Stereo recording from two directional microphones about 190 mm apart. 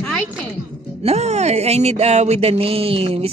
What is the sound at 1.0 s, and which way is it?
Speech, 35° right (ahead or behind).